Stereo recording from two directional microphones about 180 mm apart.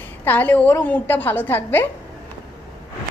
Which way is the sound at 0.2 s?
10° left (ahead or behind).